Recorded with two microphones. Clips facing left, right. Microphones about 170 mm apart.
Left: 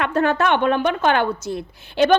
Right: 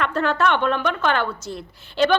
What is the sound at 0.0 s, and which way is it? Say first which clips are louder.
A woman's voice: left 2 dB; 50° left (ahead or behind).